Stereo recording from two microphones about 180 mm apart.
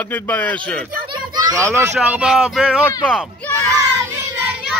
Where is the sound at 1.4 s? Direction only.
15° right (ahead or behind).